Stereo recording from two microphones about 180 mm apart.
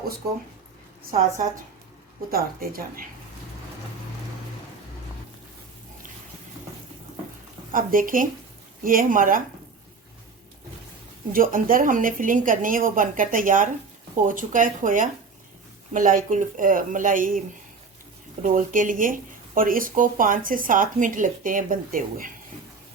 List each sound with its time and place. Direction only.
2.3 s speech: 55° right (ahead or behind)
7.7 s speech: 50° right (ahead or behind)
11.3 s speech: 50° right (ahead or behind)
18.4 s speech: 50° right (ahead or behind)